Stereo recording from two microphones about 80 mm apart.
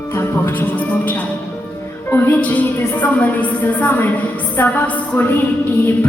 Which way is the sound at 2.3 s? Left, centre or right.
Left.